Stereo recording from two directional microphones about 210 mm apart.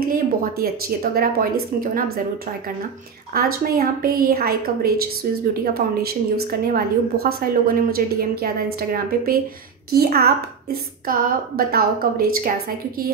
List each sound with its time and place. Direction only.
0.0 s a woman's voice: 45° right (ahead or behind)
3.3 s a woman's voice: 45° right (ahead or behind)